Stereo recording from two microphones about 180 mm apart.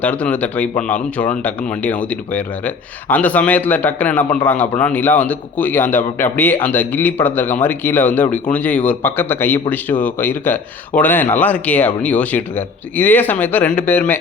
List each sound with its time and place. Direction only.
0.0 s speech: 10° left (ahead or behind)